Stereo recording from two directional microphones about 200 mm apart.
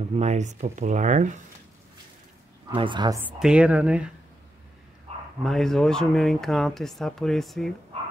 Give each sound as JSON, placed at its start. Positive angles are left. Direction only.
{"t": 0.1, "sound": "speech", "side_deg": -35}
{"t": 2.7, "sound": "speech", "side_deg": -25}
{"t": 3.3, "sound": "speech", "side_deg": -5}
{"t": 5.4, "sound": "speech", "side_deg": 0}